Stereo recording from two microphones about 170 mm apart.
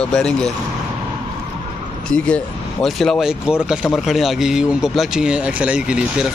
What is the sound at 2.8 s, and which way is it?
Speech, centre (ahead or behind).